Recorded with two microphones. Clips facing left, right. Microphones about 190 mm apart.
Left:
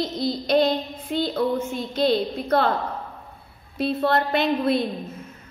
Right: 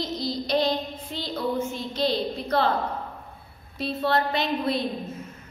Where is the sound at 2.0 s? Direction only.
55° left (ahead or behind).